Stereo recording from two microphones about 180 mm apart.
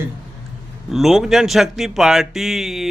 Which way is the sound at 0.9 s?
Centre (ahead or behind).